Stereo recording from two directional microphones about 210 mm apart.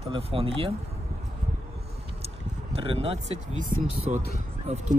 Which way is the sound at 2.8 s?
25° right (ahead or behind).